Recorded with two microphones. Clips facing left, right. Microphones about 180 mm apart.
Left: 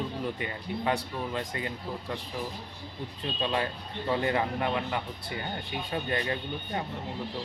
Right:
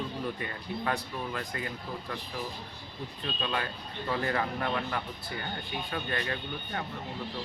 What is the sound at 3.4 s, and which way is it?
Speech, 25° left (ahead or behind).